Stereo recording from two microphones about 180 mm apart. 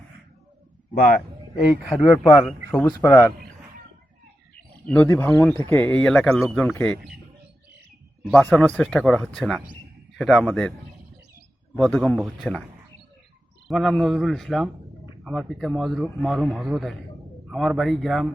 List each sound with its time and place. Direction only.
0.9 s a man's voice: 50° left (ahead or behind)
2.4 s a man's voice: 5° left (ahead or behind)
2.8 s speech: 20° left (ahead or behind)
4.9 s a man's voice: 10° left (ahead or behind)
8.2 s a man's voice: 5° left (ahead or behind)
11.8 s a man's voice: 5° left (ahead or behind)
13.7 s a man's voice: centre (ahead or behind)